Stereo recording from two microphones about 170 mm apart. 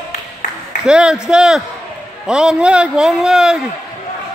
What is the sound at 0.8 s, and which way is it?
A man's voice, 5° right (ahead or behind).